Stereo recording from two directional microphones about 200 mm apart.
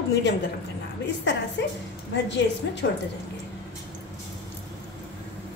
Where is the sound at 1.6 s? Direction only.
65° left (ahead or behind).